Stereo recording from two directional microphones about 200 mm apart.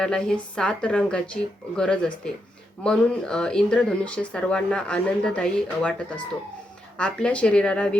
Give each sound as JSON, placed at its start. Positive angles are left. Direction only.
{"t": 0.0, "sound": "speech", "side_deg": 5}
{"t": 7.0, "sound": "speech", "side_deg": 5}